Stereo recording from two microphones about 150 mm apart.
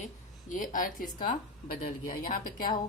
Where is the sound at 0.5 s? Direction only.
60° left (ahead or behind).